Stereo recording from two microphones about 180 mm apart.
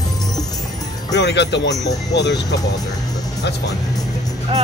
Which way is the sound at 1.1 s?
70° left (ahead or behind).